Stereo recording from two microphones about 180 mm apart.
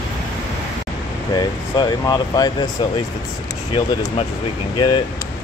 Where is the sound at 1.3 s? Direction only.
20° left (ahead or behind).